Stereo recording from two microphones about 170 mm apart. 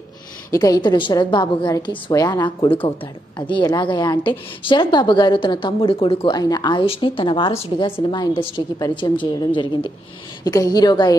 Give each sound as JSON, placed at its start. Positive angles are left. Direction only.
{"t": 0.5, "sound": "a woman's voice", "side_deg": 20}